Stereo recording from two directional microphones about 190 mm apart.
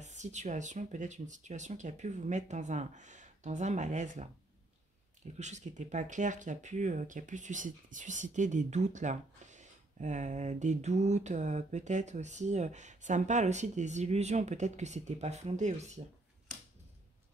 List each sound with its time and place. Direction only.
0.0 s speech: 40° right (ahead or behind)
5.4 s speech: 40° right (ahead or behind)